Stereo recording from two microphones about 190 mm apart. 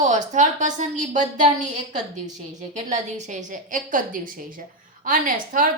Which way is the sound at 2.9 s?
40° right (ahead or behind).